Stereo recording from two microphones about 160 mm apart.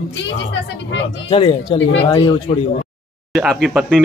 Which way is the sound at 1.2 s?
30° left (ahead or behind).